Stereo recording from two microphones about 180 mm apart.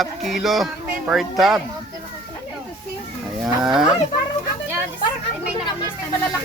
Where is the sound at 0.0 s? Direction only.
Centre (ahead or behind).